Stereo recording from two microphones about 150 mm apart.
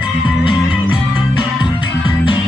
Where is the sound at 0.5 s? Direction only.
35° left (ahead or behind).